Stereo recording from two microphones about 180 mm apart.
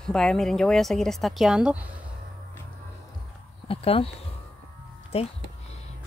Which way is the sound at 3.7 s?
30° left (ahead or behind).